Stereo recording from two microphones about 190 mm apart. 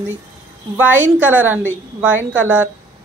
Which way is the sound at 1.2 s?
10° right (ahead or behind).